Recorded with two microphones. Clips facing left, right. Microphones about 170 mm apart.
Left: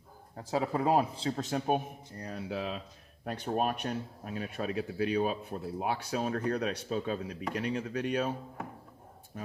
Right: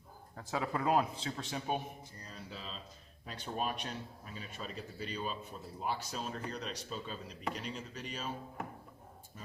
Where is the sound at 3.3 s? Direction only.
55° left (ahead or behind).